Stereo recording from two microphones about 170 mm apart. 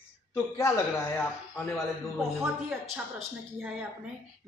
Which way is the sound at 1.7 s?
Centre (ahead or behind).